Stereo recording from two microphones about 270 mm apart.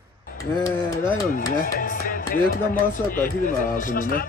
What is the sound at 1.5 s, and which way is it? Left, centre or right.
Speech, left.